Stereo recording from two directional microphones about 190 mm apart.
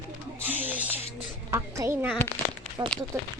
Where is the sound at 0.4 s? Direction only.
10° right (ahead or behind).